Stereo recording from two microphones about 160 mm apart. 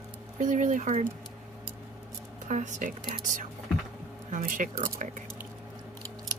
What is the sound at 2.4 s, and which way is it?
A woman's voice, 50° right (ahead or behind).